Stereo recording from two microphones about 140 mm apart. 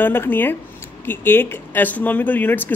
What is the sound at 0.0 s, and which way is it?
Speech, 15° left (ahead or behind).